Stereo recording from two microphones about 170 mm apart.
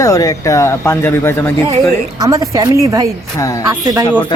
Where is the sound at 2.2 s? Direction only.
20° right (ahead or behind).